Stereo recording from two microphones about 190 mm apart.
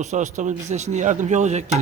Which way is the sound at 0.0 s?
40° right (ahead or behind).